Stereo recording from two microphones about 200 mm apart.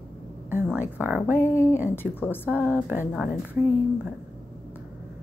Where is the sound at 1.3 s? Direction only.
15° left (ahead or behind).